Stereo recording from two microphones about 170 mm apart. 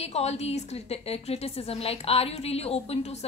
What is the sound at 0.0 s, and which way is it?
A woman's voice, 40° left (ahead or behind).